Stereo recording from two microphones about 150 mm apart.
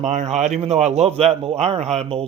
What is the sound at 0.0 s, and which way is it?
A man's voice, 50° right (ahead or behind).